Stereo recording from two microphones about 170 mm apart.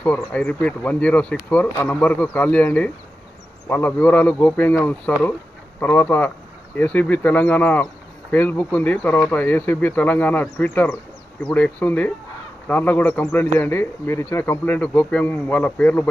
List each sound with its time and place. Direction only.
0.0 s speech: 10° left (ahead or behind)